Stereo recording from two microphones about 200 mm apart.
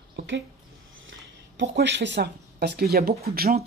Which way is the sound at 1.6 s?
60° right (ahead or behind).